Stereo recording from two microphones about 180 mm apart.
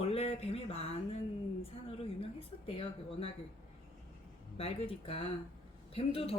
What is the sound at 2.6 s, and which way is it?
Speech, 30° left (ahead or behind).